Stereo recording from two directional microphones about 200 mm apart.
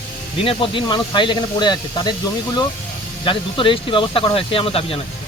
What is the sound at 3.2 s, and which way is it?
Speech, 25° left (ahead or behind).